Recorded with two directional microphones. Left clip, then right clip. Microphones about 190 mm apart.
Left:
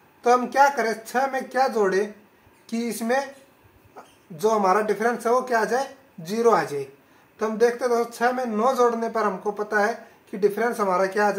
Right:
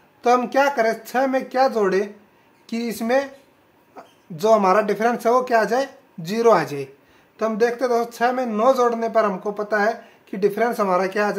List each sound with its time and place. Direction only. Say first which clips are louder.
0.2 s speech: right 1 dB; 40° right (ahead or behind)